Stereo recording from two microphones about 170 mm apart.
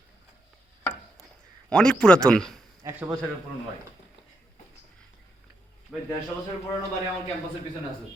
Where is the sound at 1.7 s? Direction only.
5° left (ahead or behind).